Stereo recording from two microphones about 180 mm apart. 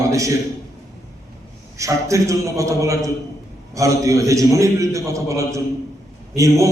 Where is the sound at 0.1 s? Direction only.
15° right (ahead or behind).